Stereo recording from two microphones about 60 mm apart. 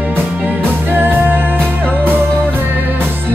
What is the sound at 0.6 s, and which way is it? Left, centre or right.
Music, right.